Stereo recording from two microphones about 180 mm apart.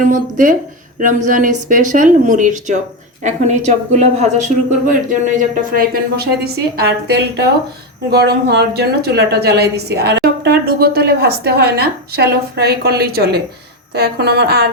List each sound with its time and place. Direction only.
0.1 s a woman's voice: 45° right (ahead or behind)
5.7 s a woman's voice: 60° right (ahead or behind)